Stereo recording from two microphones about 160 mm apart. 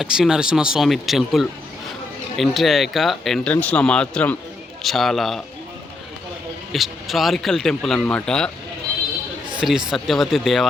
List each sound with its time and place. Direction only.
0.0 s speech: 5° right (ahead or behind)
6.7 s speech: centre (ahead or behind)
9.6 s speech: 5° right (ahead or behind)